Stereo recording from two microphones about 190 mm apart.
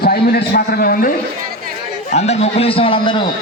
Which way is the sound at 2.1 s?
35° left (ahead or behind).